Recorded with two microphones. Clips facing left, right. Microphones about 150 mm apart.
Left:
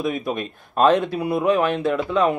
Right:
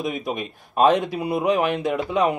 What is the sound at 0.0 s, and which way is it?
Speech, 15° right (ahead or behind).